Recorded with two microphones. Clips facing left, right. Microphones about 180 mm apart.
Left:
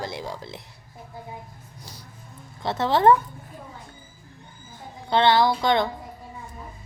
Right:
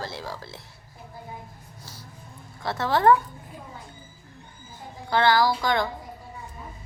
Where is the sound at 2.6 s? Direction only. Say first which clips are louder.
Left 2 dB; 20° left (ahead or behind).